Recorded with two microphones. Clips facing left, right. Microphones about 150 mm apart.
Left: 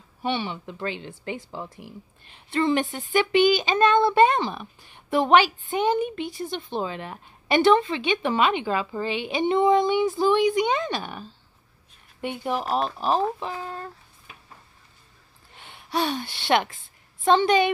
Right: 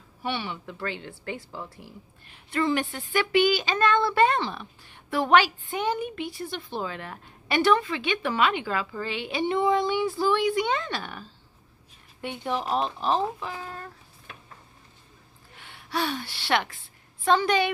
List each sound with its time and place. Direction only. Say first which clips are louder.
0.2 s speech: left 4 dB; 20° left (ahead or behind)
13.4 s speech: left 4 dB; 30° left (ahead or behind)
15.5 s a woman's voice: left 3 dB; 20° left (ahead or behind)